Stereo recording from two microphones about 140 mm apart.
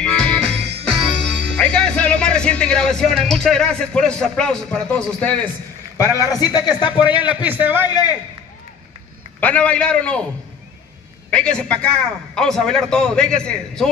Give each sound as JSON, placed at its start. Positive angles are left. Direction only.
{"t": 0.0, "sound": "music", "side_deg": 5}
{"t": 5.9, "sound": "a man's voice", "side_deg": 20}
{"t": 7.1, "sound": "a man's voice", "side_deg": -10}
{"t": 7.9, "sound": "a man's voice", "side_deg": 30}
{"t": 9.4, "sound": "a man's voice", "side_deg": 10}
{"t": 11.2, "sound": "a man's voice", "side_deg": 5}